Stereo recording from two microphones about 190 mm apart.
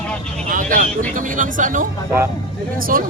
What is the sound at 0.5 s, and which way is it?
Vehicle, 45° right (ahead or behind).